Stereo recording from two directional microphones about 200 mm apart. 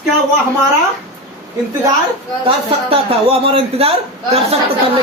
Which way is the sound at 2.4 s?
30° right (ahead or behind).